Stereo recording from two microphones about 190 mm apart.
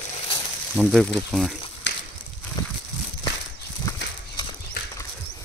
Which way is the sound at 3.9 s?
20° left (ahead or behind).